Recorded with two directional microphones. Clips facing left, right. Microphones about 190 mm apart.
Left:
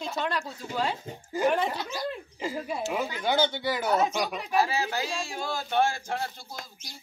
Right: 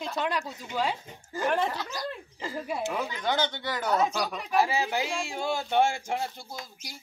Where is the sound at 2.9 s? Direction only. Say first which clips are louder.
Left 4 dB; 10° left (ahead or behind).